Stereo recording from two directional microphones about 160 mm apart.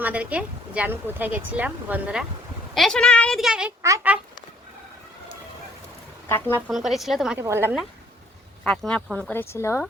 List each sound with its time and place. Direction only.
0.0 s speech: 10° right (ahead or behind)
2.7 s a woman's voice: 5° left (ahead or behind)
3.8 s speech: 20° right (ahead or behind)
6.2 s speech: 15° left (ahead or behind)
6.7 s a woman's voice: centre (ahead or behind)
7.3 s speech: 15° right (ahead or behind)
8.6 s a woman's voice: 5° left (ahead or behind)